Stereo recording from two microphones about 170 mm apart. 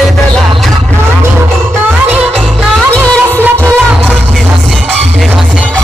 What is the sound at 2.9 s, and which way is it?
Music of bollywood, 5° left (ahead or behind).